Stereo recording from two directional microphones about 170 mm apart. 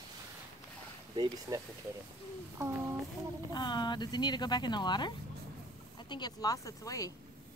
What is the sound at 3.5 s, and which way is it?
Speech, 25° left (ahead or behind).